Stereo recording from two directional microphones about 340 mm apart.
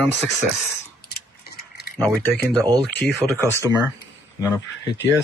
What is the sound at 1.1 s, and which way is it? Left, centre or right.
Clock, left.